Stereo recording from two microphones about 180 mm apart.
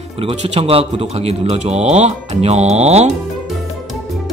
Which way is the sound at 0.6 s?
35° right (ahead or behind).